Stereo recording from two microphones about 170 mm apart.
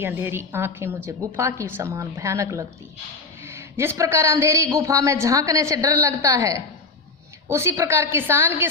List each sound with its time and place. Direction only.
0.0 s a man's voice: 15° right (ahead or behind)